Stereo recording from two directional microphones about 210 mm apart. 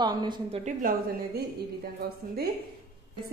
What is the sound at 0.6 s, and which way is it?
Speech, 40° right (ahead or behind).